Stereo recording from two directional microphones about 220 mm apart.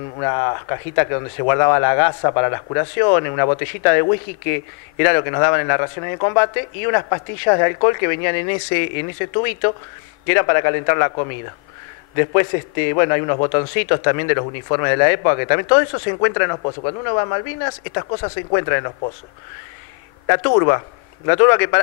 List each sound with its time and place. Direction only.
0.2 s speech: 25° left (ahead or behind)
12.4 s speech: 20° left (ahead or behind)
20.2 s speech: 20° left (ahead or behind)